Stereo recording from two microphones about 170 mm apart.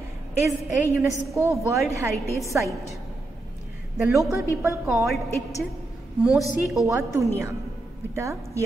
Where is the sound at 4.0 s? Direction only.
20° right (ahead or behind).